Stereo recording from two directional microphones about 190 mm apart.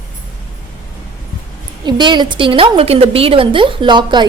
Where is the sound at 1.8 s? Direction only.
25° right (ahead or behind).